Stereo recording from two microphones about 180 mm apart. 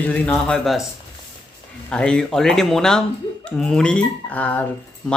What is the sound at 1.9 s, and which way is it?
Speech, 5° left (ahead or behind).